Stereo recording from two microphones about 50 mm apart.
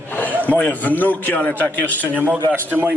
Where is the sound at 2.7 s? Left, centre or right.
Right.